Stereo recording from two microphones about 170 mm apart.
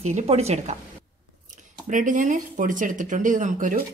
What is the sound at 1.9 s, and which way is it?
A woman's voice, 50° right (ahead or behind).